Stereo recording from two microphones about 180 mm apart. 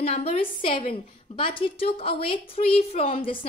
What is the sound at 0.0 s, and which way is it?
A woman's voice, 35° left (ahead or behind).